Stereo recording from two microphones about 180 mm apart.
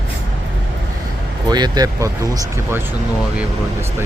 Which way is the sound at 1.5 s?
20° right (ahead or behind).